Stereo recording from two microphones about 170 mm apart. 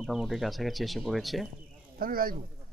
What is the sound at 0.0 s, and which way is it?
Speech, centre (ahead or behind).